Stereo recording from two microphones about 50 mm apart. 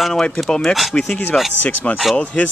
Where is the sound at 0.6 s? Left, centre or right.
Centre.